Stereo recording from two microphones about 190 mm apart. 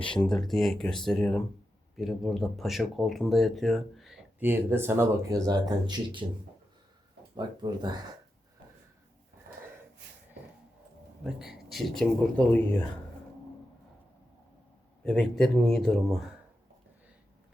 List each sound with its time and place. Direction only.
0.3 s speech: centre (ahead or behind); by 6.2 s 25° right (ahead or behind)
7.3 s speech: 20° right (ahead or behind)
11.2 s speech: 5° right (ahead or behind)
15.0 s speech: 5° left (ahead or behind)